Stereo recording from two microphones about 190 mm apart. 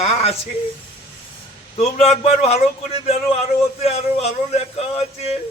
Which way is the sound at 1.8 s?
35° left (ahead or behind).